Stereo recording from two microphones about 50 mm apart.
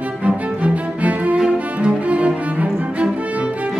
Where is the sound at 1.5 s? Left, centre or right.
Right.